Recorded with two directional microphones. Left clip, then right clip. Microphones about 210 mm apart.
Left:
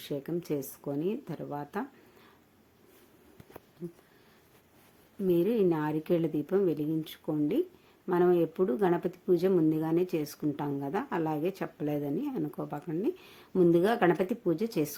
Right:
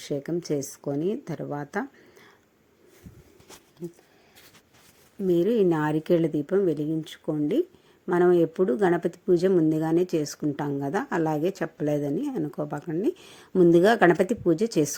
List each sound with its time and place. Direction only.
0.0 s speech: 25° right (ahead or behind)
5.2 s speech: 15° right (ahead or behind)